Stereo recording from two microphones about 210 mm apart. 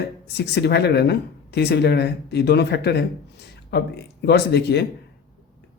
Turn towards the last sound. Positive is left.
turn(degrees=55)  # may be behind; listen again after turning